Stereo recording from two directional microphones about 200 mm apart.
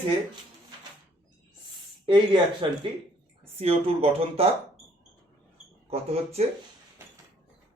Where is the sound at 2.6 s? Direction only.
25° right (ahead or behind).